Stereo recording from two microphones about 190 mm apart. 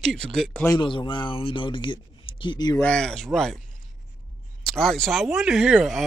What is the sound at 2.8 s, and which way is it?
Speech, 5° left (ahead or behind).